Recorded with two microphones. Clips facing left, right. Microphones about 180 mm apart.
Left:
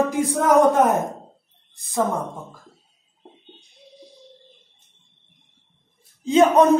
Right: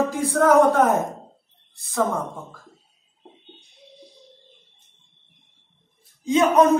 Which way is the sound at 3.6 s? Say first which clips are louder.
Left 1 dB; centre (ahead or behind).